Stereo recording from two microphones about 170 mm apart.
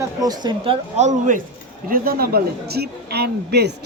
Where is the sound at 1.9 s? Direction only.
55° right (ahead or behind); by 3.7 s 75° right (ahead or behind).